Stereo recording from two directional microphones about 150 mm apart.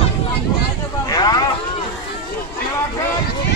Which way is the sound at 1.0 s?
25° left (ahead or behind).